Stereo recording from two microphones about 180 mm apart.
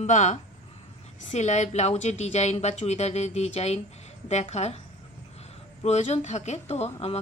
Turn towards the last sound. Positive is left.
turn(degrees=35)  # may be behind; listen again after turning